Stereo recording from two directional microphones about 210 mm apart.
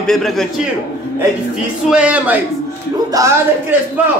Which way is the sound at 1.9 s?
5° right (ahead or behind).